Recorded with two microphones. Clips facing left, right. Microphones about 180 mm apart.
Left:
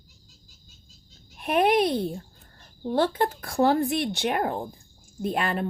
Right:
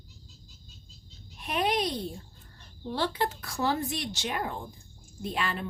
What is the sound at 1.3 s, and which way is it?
Speech, 55° left (ahead or behind).